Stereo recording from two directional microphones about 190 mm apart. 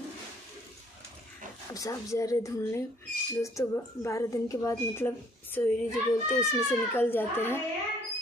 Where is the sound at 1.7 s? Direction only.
15° left (ahead or behind).